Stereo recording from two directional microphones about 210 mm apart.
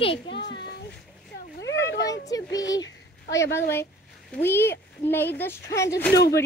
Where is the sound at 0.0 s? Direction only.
25° left (ahead or behind).